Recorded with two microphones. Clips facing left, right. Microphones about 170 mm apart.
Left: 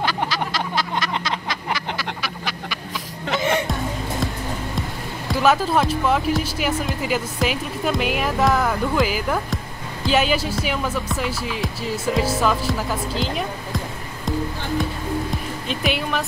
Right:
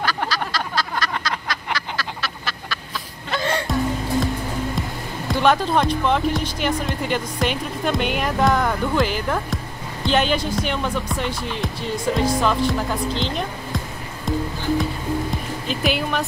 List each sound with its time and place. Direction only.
0.0 s a sound: 20° left (ahead or behind)
3.3 s music: 20° left (ahead or behind)
5.3 s speech: 5° left (ahead or behind)
15.6 s speech: centre (ahead or behind)